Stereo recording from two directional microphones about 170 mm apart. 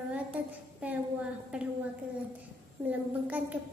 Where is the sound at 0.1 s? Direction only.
10° right (ahead or behind).